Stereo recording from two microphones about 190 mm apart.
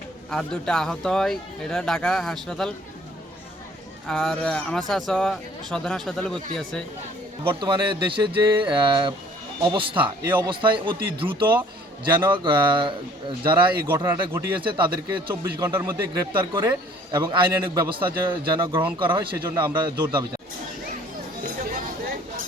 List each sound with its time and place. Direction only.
0.3 s speech: 5° left (ahead or behind)
4.0 s speech: 5° left (ahead or behind)
7.4 s a man's voice: 25° right (ahead or behind)
10.2 s speech: 10° right (ahead or behind)
10.5 s a man's voice: 25° right (ahead or behind)
13.8 s speech: 10° right (ahead or behind)
14.6 s a man's voice: 25° right (ahead or behind)
15.7 s speech: 10° right (ahead or behind)
16.3 s a man's voice: 25° right (ahead or behind)
18.7 s speech: 10° right (ahead or behind)
18.9 s a man's voice: 25° right (ahead or behind)